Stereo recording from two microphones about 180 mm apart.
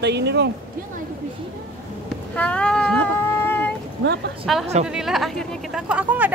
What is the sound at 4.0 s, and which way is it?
Speech, 65° right (ahead or behind).